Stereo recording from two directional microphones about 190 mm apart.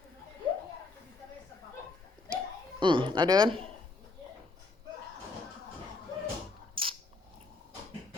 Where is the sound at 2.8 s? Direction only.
25° right (ahead or behind).